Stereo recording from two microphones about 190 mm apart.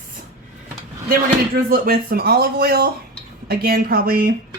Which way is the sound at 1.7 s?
50° right (ahead or behind).